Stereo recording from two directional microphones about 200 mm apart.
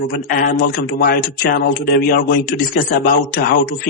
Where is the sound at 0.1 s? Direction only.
45° left (ahead or behind).